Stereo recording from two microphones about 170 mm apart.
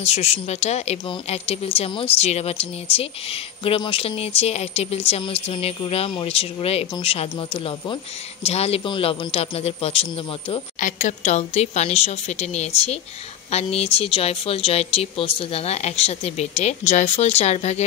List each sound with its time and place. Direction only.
0.0 s speech: 40° left (ahead or behind)
10.8 s speech: 50° left (ahead or behind)